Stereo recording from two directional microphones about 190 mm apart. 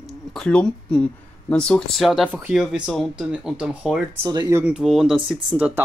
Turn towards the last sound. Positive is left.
turn(degrees=-5)  # may be behind; listen again after turning